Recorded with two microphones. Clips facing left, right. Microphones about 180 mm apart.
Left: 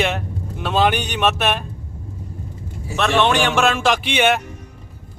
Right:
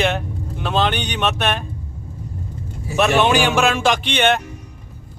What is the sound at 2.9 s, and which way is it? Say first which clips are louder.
Speech: right 2 dB; 10° right (ahead or behind).